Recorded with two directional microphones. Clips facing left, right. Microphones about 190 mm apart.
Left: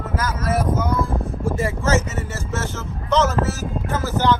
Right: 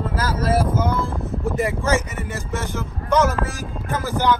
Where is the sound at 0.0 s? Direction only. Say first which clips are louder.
Right 2 dB; 30° right (ahead or behind).